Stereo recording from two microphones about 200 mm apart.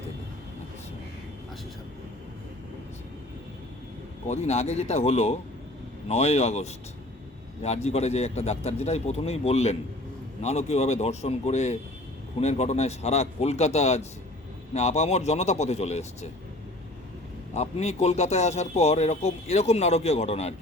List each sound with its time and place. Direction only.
4.3 s a man's voice: 35° left (ahead or behind)
17.5 s a man's voice: 35° left (ahead or behind)